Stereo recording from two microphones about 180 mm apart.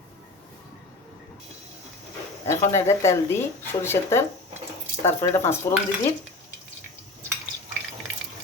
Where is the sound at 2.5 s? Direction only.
15° left (ahead or behind).